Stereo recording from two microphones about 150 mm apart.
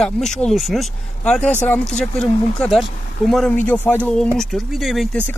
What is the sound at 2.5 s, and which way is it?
Speech, 5° left (ahead or behind).